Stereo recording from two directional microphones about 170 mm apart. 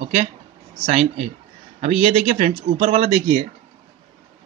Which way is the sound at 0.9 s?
45° right (ahead or behind).